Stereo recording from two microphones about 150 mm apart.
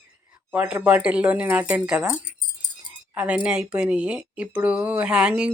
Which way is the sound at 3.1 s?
10° right (ahead or behind).